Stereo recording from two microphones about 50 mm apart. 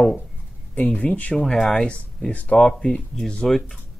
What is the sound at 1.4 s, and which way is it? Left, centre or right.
Speech, centre.